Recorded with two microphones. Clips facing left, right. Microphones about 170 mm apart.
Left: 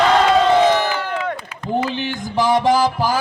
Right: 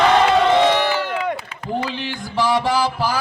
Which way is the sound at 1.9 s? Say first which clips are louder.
Left 3 dB; 45° left (ahead or behind).